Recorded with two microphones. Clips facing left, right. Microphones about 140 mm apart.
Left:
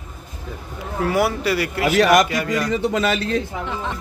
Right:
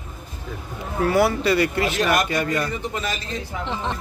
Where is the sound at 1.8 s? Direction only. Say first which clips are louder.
Left 6 dB; 75° left (ahead or behind).